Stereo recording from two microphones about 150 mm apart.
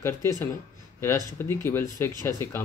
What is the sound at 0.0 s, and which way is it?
Speech, 20° left (ahead or behind).